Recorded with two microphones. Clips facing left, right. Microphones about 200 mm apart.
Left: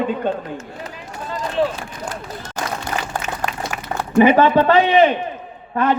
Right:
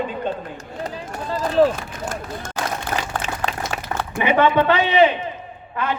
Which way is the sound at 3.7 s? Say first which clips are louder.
Right 2 dB; 30° right (ahead or behind).